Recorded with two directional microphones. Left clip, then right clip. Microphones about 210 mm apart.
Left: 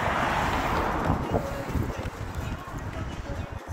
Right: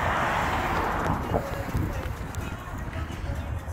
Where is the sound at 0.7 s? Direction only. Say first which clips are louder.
Even; 45° right (ahead or behind).